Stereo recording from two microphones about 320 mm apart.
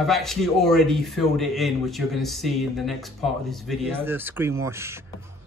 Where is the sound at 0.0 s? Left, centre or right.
Centre.